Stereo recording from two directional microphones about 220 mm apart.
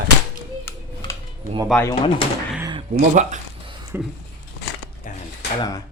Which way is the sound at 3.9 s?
10° right (ahead or behind).